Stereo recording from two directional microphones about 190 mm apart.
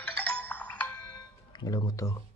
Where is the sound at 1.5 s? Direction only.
20° left (ahead or behind).